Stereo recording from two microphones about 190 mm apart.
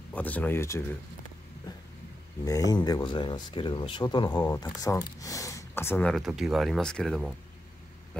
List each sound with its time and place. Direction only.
0.1 s speech: 10° left (ahead or behind)
2.4 s speech: 20° left (ahead or behind); by 7.3 s centre (ahead or behind)